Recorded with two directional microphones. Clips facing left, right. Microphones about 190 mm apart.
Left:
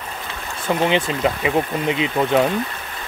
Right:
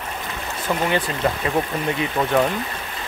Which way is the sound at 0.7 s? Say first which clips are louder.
Left 3 dB; 20° left (ahead or behind).